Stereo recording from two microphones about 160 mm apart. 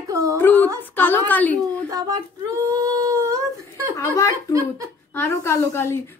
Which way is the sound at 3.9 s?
20° left (ahead or behind).